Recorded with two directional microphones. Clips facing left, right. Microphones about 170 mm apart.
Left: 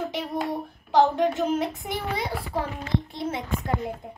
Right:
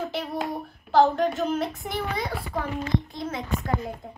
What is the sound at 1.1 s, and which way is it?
A child's voice, 20° left (ahead or behind).